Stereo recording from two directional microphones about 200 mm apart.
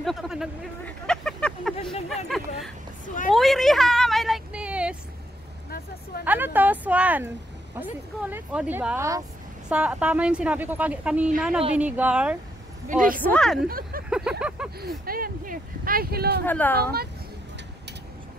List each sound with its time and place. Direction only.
0.0 s vehicle: centre (ahead or behind)
2.2 s a sound: centre (ahead or behind)
6.2 s a sound: 10° right (ahead or behind)
7.8 s a woman's voice: 10° right (ahead or behind)
12.8 s a woman's voice: 40° right (ahead or behind)
13.2 s a woman's voice: 5° left (ahead or behind)
13.7 s speech: 45° right (ahead or behind)
14.3 s a sound: 5° right (ahead or behind)
14.8 s speech: 50° right (ahead or behind)
16.4 s speech: 10° left (ahead or behind)